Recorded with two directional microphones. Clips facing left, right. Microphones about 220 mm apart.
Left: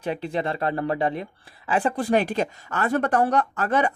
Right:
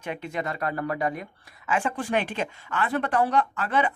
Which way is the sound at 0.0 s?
35° left (ahead or behind).